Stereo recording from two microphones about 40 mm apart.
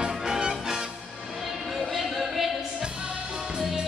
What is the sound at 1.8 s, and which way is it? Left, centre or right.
Music, centre.